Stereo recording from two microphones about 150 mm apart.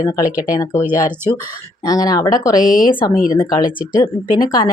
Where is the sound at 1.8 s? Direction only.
25° left (ahead or behind).